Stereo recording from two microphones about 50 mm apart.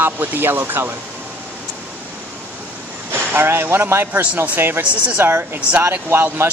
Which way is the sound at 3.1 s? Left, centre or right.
Right.